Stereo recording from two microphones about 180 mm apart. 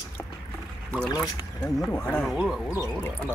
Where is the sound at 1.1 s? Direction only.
20° left (ahead or behind).